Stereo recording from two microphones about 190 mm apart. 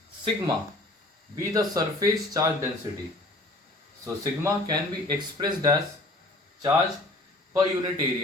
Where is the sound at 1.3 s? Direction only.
20° right (ahead or behind).